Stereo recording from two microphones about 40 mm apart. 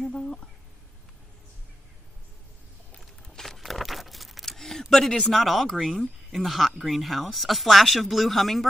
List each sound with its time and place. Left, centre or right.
0.1 s speech: centre
3.0 s a sound: centre
5.1 s speech: centre